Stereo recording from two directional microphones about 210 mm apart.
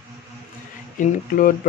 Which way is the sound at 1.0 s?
40° left (ahead or behind).